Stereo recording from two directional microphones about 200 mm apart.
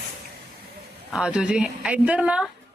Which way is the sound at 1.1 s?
5° right (ahead or behind).